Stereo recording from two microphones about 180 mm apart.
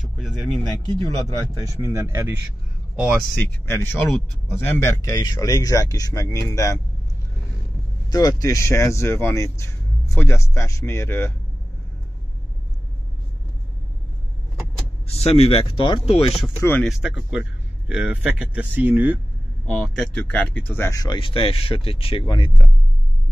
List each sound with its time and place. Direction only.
0.0 s speech: centre (ahead or behind)
1.8 s speech: 15° right (ahead or behind)
3.0 s speech: centre (ahead or behind)
3.3 s speech: 10° left (ahead or behind)
8.1 s speech: 20° left (ahead or behind)
15.0 s speech: 35° left (ahead or behind)
16.5 s speech: 15° left (ahead or behind)
16.8 s speech: centre (ahead or behind)
19.6 s speech: 5° left (ahead or behind); by 22.7 s 25° left (ahead or behind)